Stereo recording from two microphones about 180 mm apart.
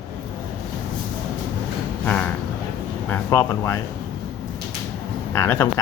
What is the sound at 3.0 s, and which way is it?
Speech, 10° left (ahead or behind).